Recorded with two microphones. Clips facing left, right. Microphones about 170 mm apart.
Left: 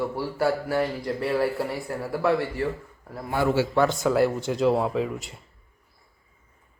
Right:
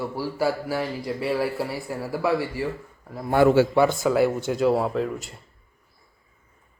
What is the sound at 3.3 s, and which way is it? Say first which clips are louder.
Speech: right 6 dB; 55° right (ahead or behind).